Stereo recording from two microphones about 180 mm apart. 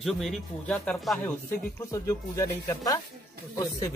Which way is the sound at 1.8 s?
15° left (ahead or behind).